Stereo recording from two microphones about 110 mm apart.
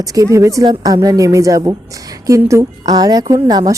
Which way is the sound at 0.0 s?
30° right (ahead or behind).